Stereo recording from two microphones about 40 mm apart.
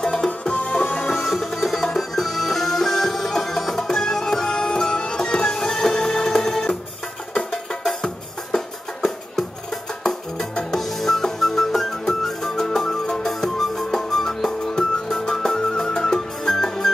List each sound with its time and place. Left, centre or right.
0.0 s music: centre
1.2 s music: centre
11.0 s music: centre